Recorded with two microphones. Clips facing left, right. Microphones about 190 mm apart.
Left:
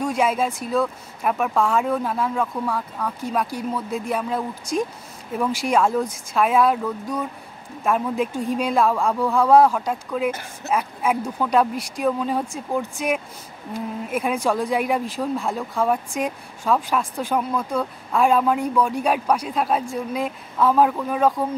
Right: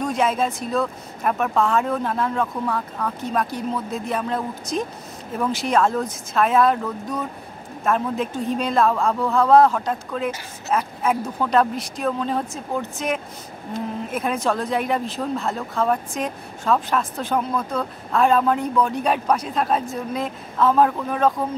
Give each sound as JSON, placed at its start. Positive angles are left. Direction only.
{"t": 0.0, "sound": "speech", "side_deg": 10}